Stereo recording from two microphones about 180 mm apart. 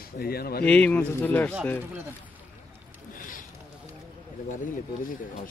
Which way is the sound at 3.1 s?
50° left (ahead or behind).